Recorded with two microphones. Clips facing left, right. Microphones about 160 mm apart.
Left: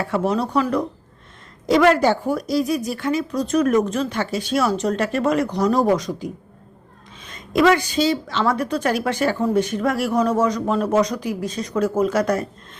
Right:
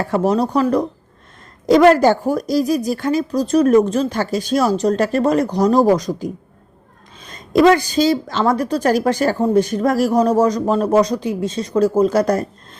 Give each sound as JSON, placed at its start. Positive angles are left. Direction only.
{"t": 0.0, "sound": "a woman's voice", "side_deg": -40}
{"t": 7.3, "sound": "a woman's voice", "side_deg": -35}